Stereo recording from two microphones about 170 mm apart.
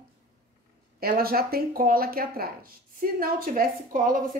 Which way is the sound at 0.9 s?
60° right (ahead or behind).